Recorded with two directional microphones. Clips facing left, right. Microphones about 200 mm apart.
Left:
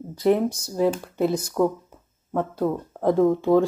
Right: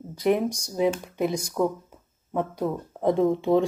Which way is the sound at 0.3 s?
15° right (ahead or behind).